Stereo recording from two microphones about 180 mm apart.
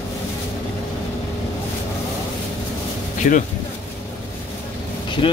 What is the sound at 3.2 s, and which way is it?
Speech, 45° left (ahead or behind).